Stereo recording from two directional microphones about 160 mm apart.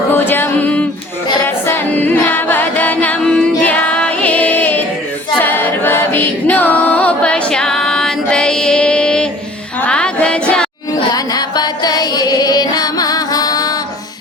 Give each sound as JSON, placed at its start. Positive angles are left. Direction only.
{"t": 0.1, "sound": "music", "side_deg": 15}
{"t": 5.4, "sound": "a capella", "side_deg": 10}
{"t": 9.8, "sound": "music", "side_deg": 5}
{"t": 11.1, "sound": "music", "side_deg": 25}